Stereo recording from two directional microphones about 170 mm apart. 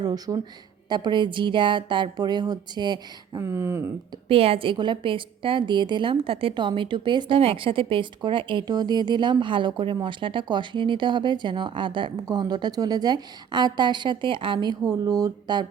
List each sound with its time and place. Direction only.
0.0 s a woman's voice: 20° right (ahead or behind)
4.3 s a woman's voice: 35° right (ahead or behind)